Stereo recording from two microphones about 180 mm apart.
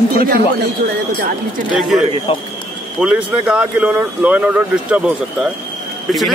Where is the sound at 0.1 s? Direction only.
55° right (ahead or behind).